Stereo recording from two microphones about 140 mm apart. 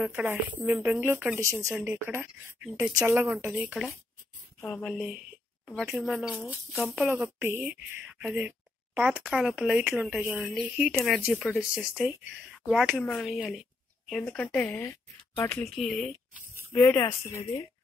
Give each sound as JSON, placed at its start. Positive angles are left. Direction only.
{"t": 0.0, "sound": "speech", "side_deg": -15}
{"t": 4.6, "sound": "speech", "side_deg": 10}
{"t": 4.8, "sound": "speech", "side_deg": -5}
{"t": 7.3, "sound": "a woman's voice", "side_deg": -15}
{"t": 15.7, "sound": "speech", "side_deg": 0}
{"t": 16.6, "sound": "speech", "side_deg": 15}